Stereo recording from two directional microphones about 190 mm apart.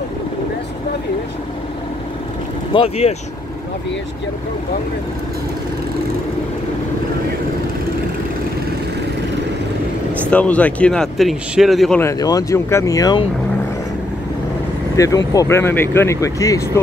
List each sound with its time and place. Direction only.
2.7 s speech: 30° left (ahead or behind)
10.3 s speech: 5° left (ahead or behind)
12.0 s speech: 15° left (ahead or behind)
15.0 s speech: 20° left (ahead or behind)